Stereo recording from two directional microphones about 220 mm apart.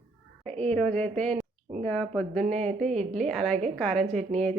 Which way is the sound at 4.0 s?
30° right (ahead or behind).